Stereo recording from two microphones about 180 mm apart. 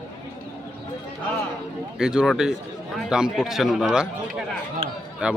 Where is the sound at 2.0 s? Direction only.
5° right (ahead or behind).